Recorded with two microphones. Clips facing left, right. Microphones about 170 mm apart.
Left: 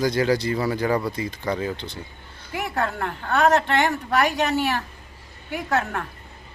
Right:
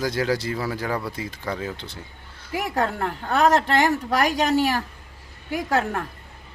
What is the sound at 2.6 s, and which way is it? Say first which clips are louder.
Speech: right 1 dB; 40° right (ahead or behind).